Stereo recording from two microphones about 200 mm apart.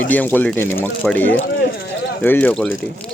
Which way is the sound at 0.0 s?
5° left (ahead or behind).